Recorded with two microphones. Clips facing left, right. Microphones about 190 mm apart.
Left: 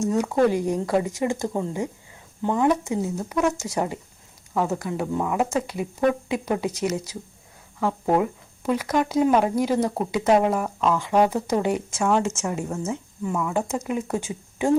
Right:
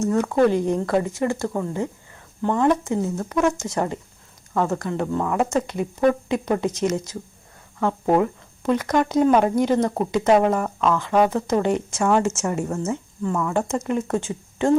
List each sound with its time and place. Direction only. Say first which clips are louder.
0.1 s speech: right 2 dB; 15° left (ahead or behind)